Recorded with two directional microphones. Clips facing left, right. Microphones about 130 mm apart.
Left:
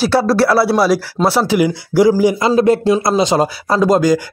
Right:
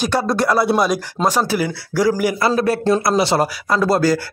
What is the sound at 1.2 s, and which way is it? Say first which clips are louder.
Speech: left 2 dB; centre (ahead or behind).